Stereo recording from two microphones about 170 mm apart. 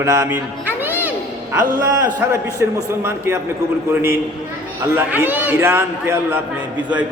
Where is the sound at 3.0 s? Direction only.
15° right (ahead or behind).